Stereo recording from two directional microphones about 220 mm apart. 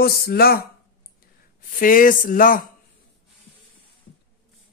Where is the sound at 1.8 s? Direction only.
40° left (ahead or behind).